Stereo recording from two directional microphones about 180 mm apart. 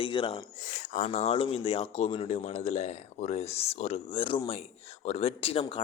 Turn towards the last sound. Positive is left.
turn(degrees=30)  # may be behind; listen again after turning